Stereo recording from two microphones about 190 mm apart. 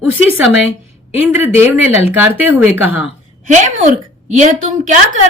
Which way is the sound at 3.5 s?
40° right (ahead or behind).